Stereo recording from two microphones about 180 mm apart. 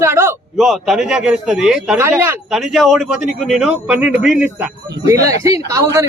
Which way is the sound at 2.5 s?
Centre (ahead or behind).